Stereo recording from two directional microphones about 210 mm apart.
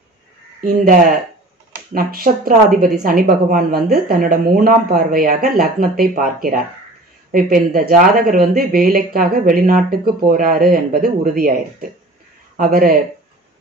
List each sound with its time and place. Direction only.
0.6 s speech: 45° right (ahead or behind)